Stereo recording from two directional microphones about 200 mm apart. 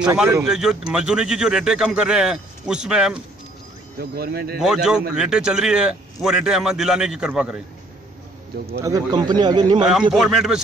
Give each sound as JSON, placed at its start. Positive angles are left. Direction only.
{"t": 0.0, "sound": "speech", "side_deg": -10}
{"t": 4.0, "sound": "speech", "side_deg": -55}
{"t": 4.6, "sound": "speech", "side_deg": -5}
{"t": 8.8, "sound": "a man's voice", "side_deg": -20}
{"t": 10.1, "sound": "speech", "side_deg": 0}